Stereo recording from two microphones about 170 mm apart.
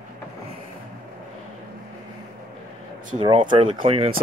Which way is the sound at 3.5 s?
30° right (ahead or behind).